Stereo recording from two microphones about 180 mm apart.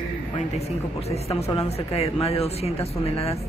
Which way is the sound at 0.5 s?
35° left (ahead or behind).